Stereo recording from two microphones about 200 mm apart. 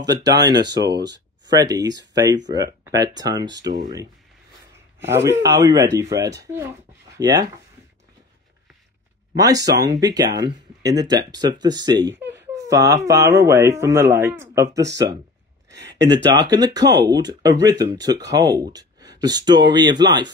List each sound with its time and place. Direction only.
0.0 s speech: 20° right (ahead or behind)
5.1 s speech: 15° right (ahead or behind)
9.3 s speech: 20° right (ahead or behind)
14.9 s speech: 60° right (ahead or behind)
15.7 s a sound: 60° right (ahead or behind)
16.1 s speech: 20° right (ahead or behind)